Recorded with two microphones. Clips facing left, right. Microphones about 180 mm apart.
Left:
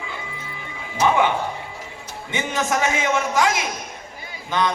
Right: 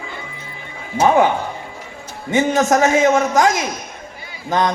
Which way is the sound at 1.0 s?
40° right (ahead or behind).